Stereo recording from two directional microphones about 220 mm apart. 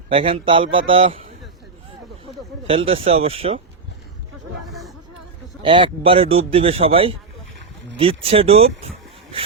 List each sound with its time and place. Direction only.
0.1 s a man's voice: 25° right (ahead or behind)
2.6 s a man's voice: 25° right (ahead or behind)
4.6 s a sound: centre (ahead or behind)
5.6 s a man's voice: 25° right (ahead or behind)